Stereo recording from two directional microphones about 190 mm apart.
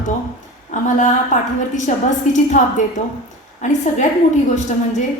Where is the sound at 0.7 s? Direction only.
40° left (ahead or behind).